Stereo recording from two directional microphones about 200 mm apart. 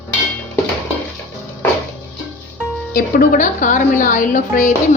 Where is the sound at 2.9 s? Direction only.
45° left (ahead or behind).